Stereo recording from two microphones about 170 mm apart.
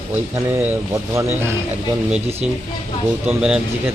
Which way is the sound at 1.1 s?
15° right (ahead or behind).